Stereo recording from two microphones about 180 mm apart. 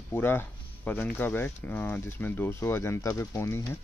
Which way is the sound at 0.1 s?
10° left (ahead or behind).